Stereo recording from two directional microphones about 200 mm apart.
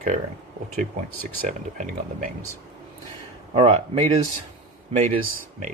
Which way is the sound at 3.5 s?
30° right (ahead or behind).